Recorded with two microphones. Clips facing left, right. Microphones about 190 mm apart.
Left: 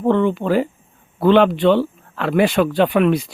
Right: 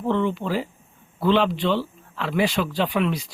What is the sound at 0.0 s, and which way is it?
Speech, 55° left (ahead or behind).